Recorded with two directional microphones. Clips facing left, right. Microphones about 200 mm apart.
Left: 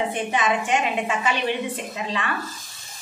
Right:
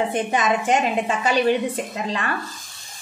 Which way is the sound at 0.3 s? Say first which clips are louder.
Right 2 dB; 40° right (ahead or behind).